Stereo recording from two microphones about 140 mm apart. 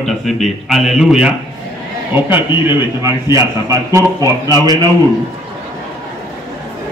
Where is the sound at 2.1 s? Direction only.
15° right (ahead or behind).